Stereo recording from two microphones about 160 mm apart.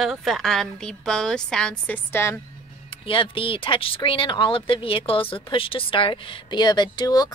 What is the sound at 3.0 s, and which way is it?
Speech, 35° left (ahead or behind).